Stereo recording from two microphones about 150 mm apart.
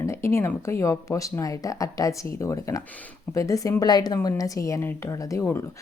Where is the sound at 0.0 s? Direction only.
20° left (ahead or behind).